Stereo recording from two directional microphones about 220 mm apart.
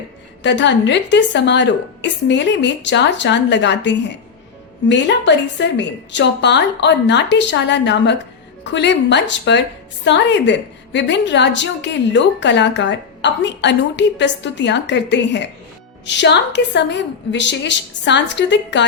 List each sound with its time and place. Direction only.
0.4 s a woman's voice: 55° left (ahead or behind)